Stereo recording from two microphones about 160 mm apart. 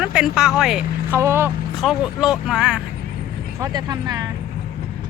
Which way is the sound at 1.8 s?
Centre (ahead or behind).